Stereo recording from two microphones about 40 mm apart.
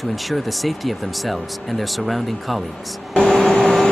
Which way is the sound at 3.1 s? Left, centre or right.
Left.